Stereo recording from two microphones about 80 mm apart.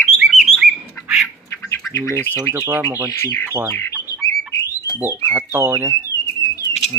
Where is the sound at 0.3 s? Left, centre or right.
Centre.